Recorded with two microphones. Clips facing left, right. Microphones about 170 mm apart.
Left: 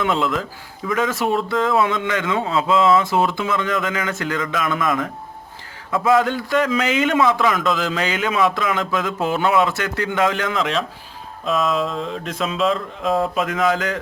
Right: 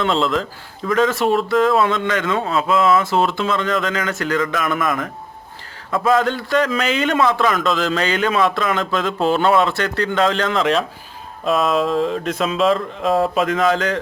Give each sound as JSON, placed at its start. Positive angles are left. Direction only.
{"t": 0.0, "sound": "a man's voice", "side_deg": 15}
{"t": 11.4, "sound": "speech", "side_deg": -55}
{"t": 12.2, "sound": "speech", "side_deg": 0}